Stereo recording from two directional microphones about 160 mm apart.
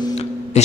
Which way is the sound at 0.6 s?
45° left (ahead or behind).